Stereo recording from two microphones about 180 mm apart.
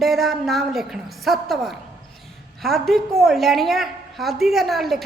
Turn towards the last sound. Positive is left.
turn(degrees=0)  # may be behind; listen again after turning